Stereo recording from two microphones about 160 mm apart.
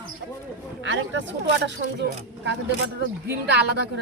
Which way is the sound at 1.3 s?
90° right.